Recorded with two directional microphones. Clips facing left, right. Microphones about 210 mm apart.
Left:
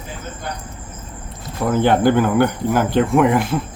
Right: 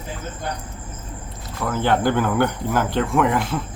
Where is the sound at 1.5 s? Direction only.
20° left (ahead or behind).